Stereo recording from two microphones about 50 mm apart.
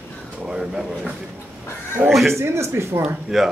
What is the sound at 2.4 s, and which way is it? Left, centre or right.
Speech, right.